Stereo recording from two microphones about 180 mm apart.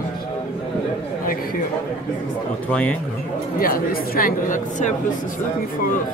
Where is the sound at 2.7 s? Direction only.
5° left (ahead or behind).